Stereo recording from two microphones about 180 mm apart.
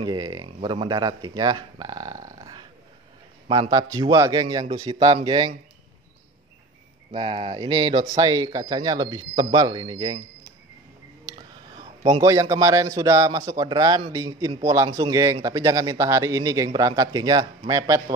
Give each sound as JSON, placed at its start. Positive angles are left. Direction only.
{"t": 0.0, "sound": "speech", "side_deg": -20}
{"t": 3.7, "sound": "a man's voice", "side_deg": -20}
{"t": 7.1, "sound": "a man's voice", "side_deg": -30}
{"t": 11.2, "sound": "a sound", "side_deg": -30}
{"t": 12.2, "sound": "a man's voice", "side_deg": -20}